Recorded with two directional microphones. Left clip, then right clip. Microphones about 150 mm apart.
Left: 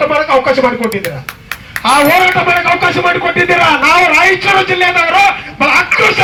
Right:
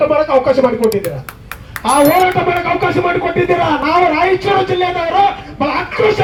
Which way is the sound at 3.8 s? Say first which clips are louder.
Left 5 dB; 30° right (ahead or behind).